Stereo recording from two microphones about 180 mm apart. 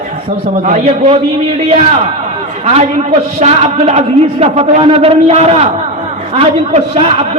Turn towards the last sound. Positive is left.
turn(degrees=-35)  # may be behind; listen again after turning